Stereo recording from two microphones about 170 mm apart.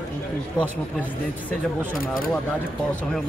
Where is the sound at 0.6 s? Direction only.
25° left (ahead or behind).